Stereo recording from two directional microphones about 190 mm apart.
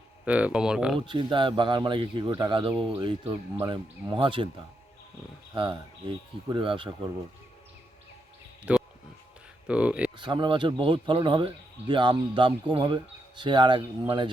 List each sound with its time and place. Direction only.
0.3 s speech: 5° right (ahead or behind)
0.9 s speech: 25° right (ahead or behind)
5.5 s speech: 25° right (ahead or behind)
8.7 s a sound: 5° right (ahead or behind)
9.6 s speech: 5° right (ahead or behind)
10.2 s speech: 25° right (ahead or behind)